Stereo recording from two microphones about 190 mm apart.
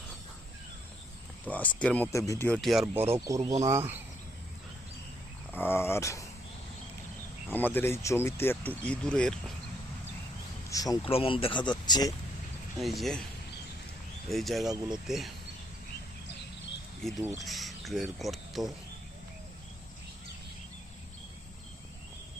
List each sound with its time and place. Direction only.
1.5 s speech: 10° left (ahead or behind)
2.5 s speech: centre (ahead or behind)
2.8 s speech: 10° right (ahead or behind)
5.5 s speech: 10° left (ahead or behind)
7.5 s speech: 10° left (ahead or behind)
10.7 s speech: 20° left (ahead or behind)
11.1 s speech: 30° left (ahead or behind)
12.8 s speech: centre (ahead or behind)
14.3 s speech: centre (ahead or behind)
14.7 s speech: 20° right (ahead or behind)
15.0 s speech: centre (ahead or behind)
17.0 s speech: centre (ahead or behind)